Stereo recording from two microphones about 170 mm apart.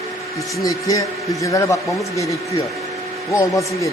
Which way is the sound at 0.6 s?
20° left (ahead or behind).